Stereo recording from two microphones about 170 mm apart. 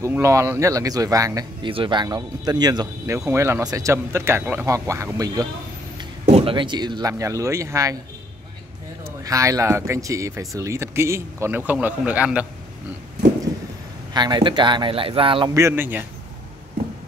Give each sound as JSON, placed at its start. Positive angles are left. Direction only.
{"t": 0.0, "sound": "speech", "side_deg": -15}
{"t": 6.2, "sound": "speech", "side_deg": -35}
{"t": 9.2, "sound": "speech", "side_deg": -20}
{"t": 14.1, "sound": "speech", "side_deg": -25}
{"t": 15.5, "sound": "speech", "side_deg": -15}